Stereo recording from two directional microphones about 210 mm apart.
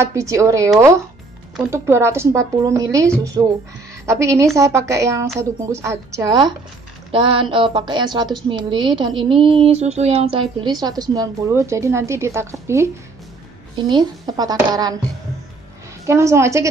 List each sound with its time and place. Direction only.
0.0 s a woman's voice: 15° right (ahead or behind)
1.7 s a woman's voice: 15° right (ahead or behind)
16.1 s a woman's voice: 15° right (ahead or behind)